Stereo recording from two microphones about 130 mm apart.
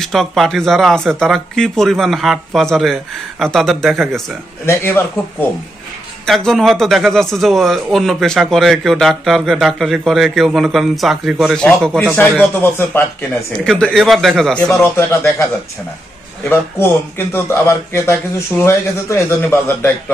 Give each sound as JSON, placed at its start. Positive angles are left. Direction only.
{"t": 0.0, "sound": "a man's voice", "side_deg": 5}
{"t": 4.6, "sound": "a man's voice", "side_deg": 15}
{"t": 6.2, "sound": "a man's voice", "side_deg": 5}
{"t": 13.7, "sound": "a man's voice", "side_deg": 5}
{"t": 14.7, "sound": "a man's voice", "side_deg": 20}
{"t": 16.4, "sound": "a man's voice", "side_deg": 15}